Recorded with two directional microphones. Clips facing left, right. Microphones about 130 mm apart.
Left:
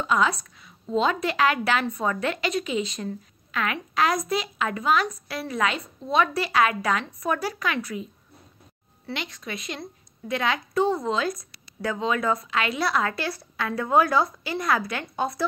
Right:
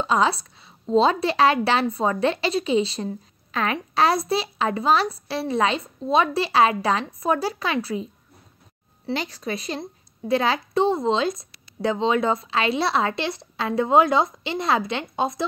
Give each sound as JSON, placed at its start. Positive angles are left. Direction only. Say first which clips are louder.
{"t": 0.0, "sound": "a woman's voice", "louder": "right 2 dB", "side_deg": -30}